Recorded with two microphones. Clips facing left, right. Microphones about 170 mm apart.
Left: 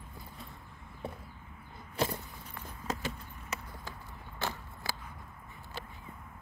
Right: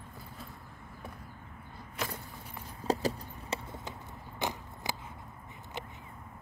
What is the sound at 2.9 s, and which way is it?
Clip-clop, 35° right (ahead or behind).